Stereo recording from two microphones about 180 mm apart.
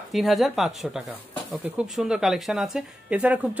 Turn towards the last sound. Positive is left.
turn(degrees=-10)  # may be behind; listen again after turning